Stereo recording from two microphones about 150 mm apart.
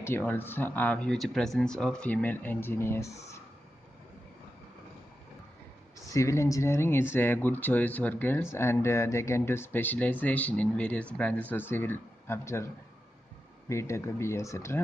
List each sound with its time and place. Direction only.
0.0 s speech: 15° left (ahead or behind)
6.1 s speech: 20° left (ahead or behind)
13.7 s speech: 20° left (ahead or behind)